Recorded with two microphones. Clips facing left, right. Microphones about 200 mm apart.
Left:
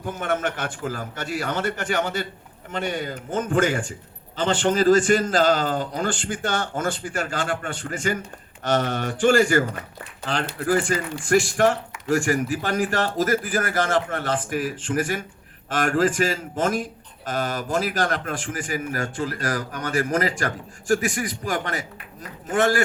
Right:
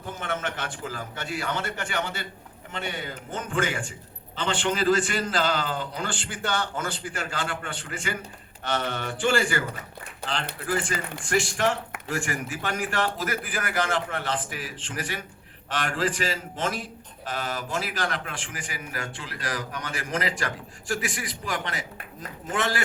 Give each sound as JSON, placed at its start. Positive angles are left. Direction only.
{"t": 0.0, "sound": "a man's voice", "side_deg": 50}